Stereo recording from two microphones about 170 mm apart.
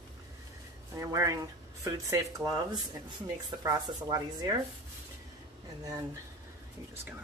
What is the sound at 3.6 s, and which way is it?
Speech, 20° right (ahead or behind).